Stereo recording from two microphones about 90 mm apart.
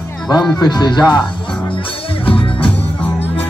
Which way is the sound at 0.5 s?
50° left (ahead or behind).